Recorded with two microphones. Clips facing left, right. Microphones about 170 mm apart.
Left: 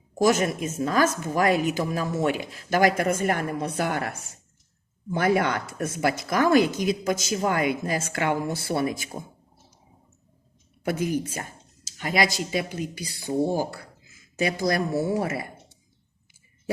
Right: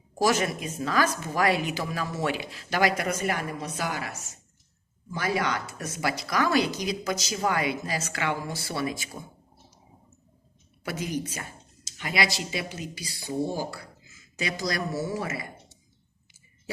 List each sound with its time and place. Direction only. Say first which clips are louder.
0.2 s a woman's voice: left 3 dB; 50° left (ahead or behind)
10.8 s a woman's voice: left 5 dB; 50° left (ahead or behind)